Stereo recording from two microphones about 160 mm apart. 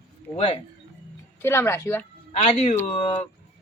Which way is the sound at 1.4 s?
15° left (ahead or behind).